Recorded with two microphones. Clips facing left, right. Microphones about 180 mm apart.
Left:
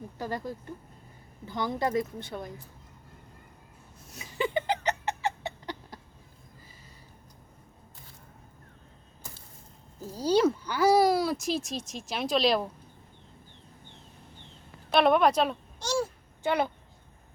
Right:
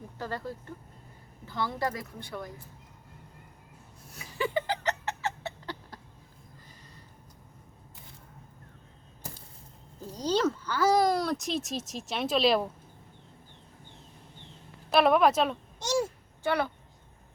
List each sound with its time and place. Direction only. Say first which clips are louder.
0.2 s a woman's voice: left 2 dB; 15° left (ahead or behind)
4.1 s a sound: left 1 dB; 20° left (ahead or behind)
10.0 s speech: left 3 dB; 10° left (ahead or behind)
14.8 s speech: even; centre (ahead or behind)
15.8 s a sound: right 1 dB; 20° right (ahead or behind)
16.4 s speech: left 1 dB; 20° left (ahead or behind)